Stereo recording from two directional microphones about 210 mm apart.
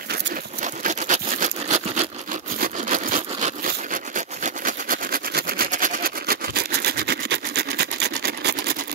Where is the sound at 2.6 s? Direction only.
40° right (ahead or behind).